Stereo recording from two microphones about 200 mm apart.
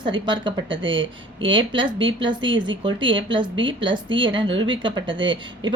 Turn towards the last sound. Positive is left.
turn(degrees=-25)  # may be behind; listen again after turning